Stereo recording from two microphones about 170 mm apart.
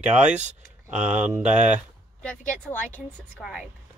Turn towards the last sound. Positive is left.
turn(degrees=0)  # may be behind; listen again after turning